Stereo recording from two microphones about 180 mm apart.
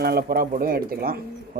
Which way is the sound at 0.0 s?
60° right (ahead or behind).